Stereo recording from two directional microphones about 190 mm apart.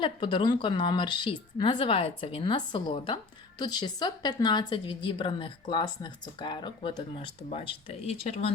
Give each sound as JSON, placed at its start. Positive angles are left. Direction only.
{"t": 0.0, "sound": "a woman's voice", "side_deg": 25}